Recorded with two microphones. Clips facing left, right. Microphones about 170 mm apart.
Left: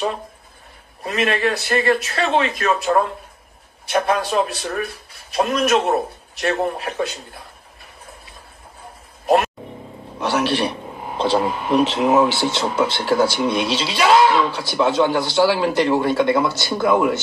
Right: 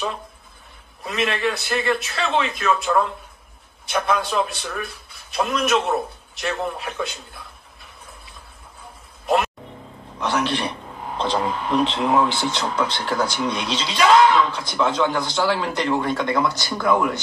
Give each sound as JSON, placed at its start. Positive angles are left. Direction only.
{"t": 1.0, "sound": "a man's voice", "side_deg": 45}
{"t": 9.2, "sound": "a sound", "side_deg": 45}
{"t": 10.1, "sound": "a man's voice", "side_deg": 10}
{"t": 16.4, "sound": "speech", "side_deg": 25}